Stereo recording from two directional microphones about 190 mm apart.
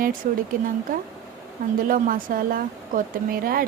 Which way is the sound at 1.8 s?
45° right (ahead or behind).